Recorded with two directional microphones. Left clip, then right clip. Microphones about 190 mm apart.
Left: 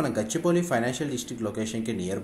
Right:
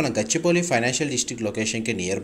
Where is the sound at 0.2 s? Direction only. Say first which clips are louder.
Right 5 dB; 20° right (ahead or behind).